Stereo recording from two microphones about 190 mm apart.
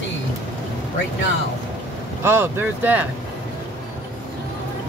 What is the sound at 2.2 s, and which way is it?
Speech, 10° right (ahead or behind).